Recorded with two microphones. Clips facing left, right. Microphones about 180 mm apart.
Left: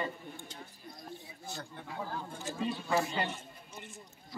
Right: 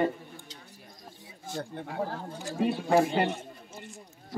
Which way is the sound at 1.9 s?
55° right (ahead or behind).